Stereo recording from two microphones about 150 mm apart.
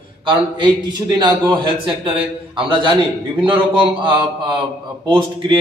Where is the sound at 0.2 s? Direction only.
30° right (ahead or behind).